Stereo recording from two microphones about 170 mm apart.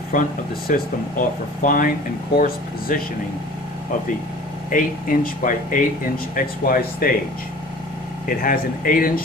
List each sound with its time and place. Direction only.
0.1 s speech: 50° left (ahead or behind)
4.6 s speech: 55° left (ahead or behind)
8.3 s speech: 55° left (ahead or behind)